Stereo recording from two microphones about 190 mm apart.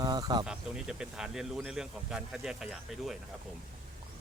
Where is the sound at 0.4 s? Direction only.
5° right (ahead or behind).